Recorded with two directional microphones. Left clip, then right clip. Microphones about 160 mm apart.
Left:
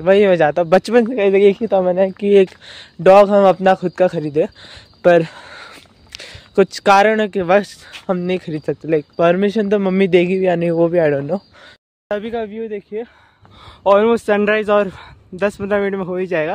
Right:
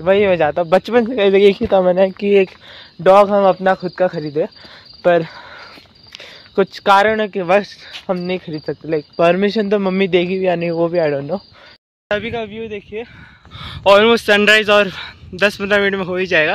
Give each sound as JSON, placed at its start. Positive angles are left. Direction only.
{"t": 0.0, "sound": "speech", "side_deg": 50}
{"t": 1.1, "sound": "speech", "side_deg": 10}
{"t": 2.3, "sound": "speech", "side_deg": 45}
{"t": 8.2, "sound": "speech", "side_deg": 45}
{"t": 9.1, "sound": "speech", "side_deg": 15}
{"t": 9.9, "sound": "speech", "side_deg": 40}
{"t": 12.1, "sound": "speech", "side_deg": 20}
{"t": 12.4, "sound": "speech", "side_deg": 35}
{"t": 13.6, "sound": "speech", "side_deg": 5}